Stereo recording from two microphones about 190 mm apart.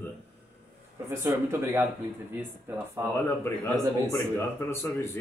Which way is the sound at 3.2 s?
15° left (ahead or behind).